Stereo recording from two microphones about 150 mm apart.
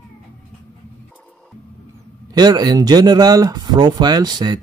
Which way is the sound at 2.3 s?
25° right (ahead or behind).